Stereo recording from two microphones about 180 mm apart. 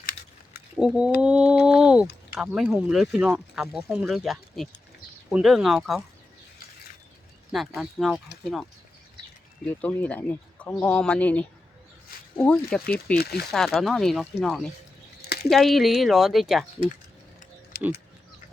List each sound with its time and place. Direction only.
0.0 s a sound: 55° left (ahead or behind)
0.8 s speech: 5° right (ahead or behind)
7.5 s speech: centre (ahead or behind)
9.6 s speech: 10° left (ahead or behind)